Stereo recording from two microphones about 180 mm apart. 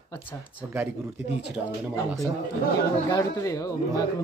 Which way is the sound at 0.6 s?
10° right (ahead or behind).